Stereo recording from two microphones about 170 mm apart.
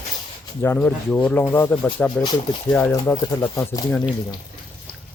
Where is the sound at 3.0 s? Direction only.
20° left (ahead or behind).